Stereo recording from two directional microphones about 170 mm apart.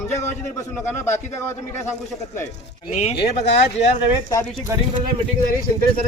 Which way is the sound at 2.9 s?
40° left (ahead or behind).